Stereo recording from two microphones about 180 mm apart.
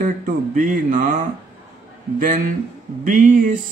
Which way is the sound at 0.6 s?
45° right (ahead or behind).